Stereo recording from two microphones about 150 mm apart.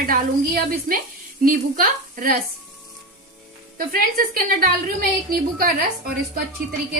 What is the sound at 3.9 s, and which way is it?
Speech, 80° right.